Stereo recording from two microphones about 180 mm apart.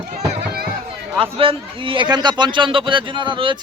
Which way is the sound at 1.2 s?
30° right (ahead or behind).